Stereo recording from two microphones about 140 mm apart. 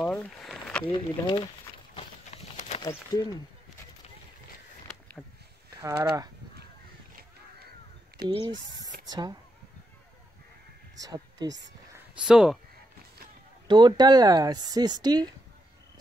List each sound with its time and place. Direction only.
0.0 s a sound: 5° left (ahead or behind)
0.9 s speech: 35° left (ahead or behind)
2.0 s a sound: 50° left (ahead or behind)
4.8 s a sound: 10° left (ahead or behind)
5.8 s speech: 25° right (ahead or behind)
8.2 s speech: 90° right
9.1 s speech: 30° right (ahead or behind)
11.0 s speech: 25° right (ahead or behind)
12.3 s speech: 5° right (ahead or behind)
13.7 s speech: 35° right (ahead or behind)